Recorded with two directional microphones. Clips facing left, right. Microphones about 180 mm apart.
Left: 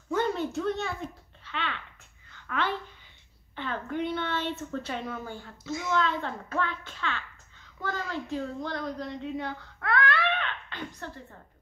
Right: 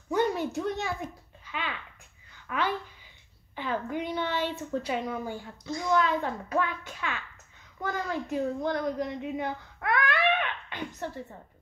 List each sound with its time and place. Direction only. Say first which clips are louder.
0.1 s a sound: right 1 dB; 15° right (ahead or behind)
1.4 s a child's voice: left 1 dB; 10° right (ahead or behind)
5.6 s a woman's voice: left 2 dB; 5° left (ahead or behind)
5.9 s a woman's voice: right 2 dB; 10° right (ahead or behind)